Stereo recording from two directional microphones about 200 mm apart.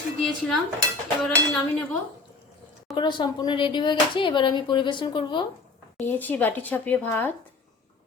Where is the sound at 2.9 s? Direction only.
25° left (ahead or behind).